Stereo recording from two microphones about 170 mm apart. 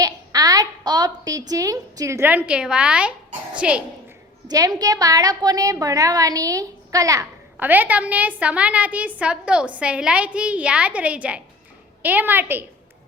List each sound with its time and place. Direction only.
0.0 s a sound: 20° right (ahead or behind); by 3.1 s 5° right (ahead or behind)
3.6 s a woman's voice: 5° right (ahead or behind)
4.4 s a woman's voice: 20° right (ahead or behind)